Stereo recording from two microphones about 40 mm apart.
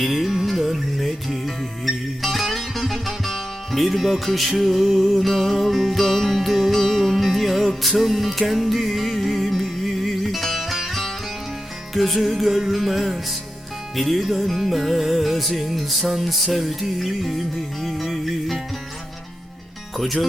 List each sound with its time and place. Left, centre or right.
0.0 s music: centre
5.1 s music: centre